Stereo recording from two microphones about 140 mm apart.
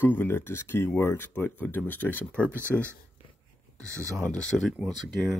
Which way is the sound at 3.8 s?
20° right (ahead or behind).